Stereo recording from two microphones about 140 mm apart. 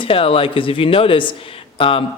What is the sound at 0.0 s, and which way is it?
Speech, 40° left (ahead or behind).